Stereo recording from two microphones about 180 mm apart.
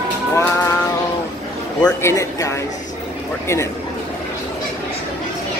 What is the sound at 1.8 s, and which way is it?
Speech, 15° left (ahead or behind).